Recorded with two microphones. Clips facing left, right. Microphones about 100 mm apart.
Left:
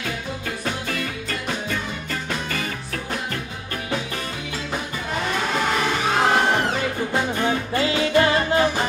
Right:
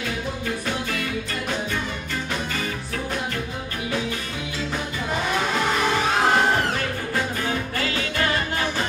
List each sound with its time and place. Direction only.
7.7 s music: 25° left (ahead or behind)